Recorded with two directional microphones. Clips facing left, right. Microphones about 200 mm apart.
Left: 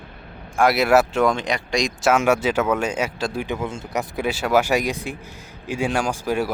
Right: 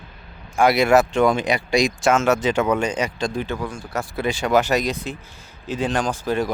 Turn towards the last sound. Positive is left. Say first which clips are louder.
# even
turn(degrees=10)  # may be behind; listen again after turning